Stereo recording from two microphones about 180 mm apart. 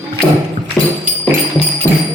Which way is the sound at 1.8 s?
15° left (ahead or behind).